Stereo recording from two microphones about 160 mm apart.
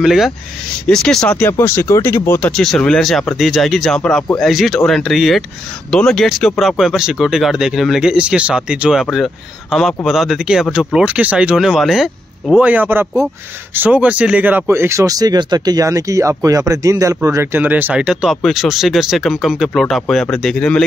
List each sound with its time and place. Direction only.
0.0 s speech: centre (ahead or behind); by 2.5 s 15° left (ahead or behind)
2.5 s speech: 5° left (ahead or behind)